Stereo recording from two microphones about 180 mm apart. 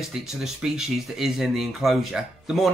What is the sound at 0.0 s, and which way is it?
Speech, centre (ahead or behind).